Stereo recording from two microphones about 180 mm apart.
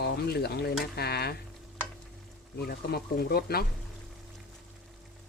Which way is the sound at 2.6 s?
60° left (ahead or behind).